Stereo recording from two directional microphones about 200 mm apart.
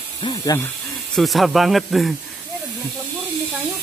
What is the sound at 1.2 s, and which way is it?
Speech, centre (ahead or behind).